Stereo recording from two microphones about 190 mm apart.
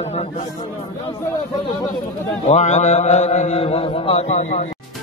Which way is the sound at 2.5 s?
40° left (ahead or behind).